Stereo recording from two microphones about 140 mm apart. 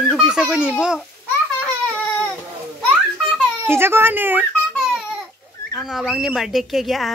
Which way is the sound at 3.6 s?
15° right (ahead or behind).